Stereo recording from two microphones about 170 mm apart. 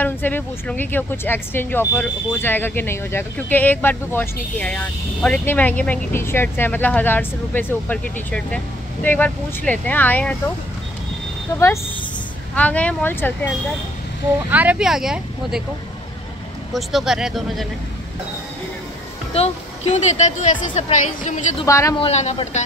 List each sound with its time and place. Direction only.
0.0 s speech: 10° left (ahead or behind)
11.5 s speech: 15° left (ahead or behind)
14.5 s speech: 10° right (ahead or behind)
16.7 s speech: centre (ahead or behind)
19.3 s speech: 40° left (ahead or behind)
21.6 s speech: 20° left (ahead or behind)
21.9 s speech: 40° left (ahead or behind)